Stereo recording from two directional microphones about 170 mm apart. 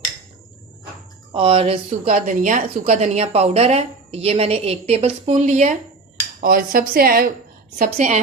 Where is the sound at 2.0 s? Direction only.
50° right (ahead or behind).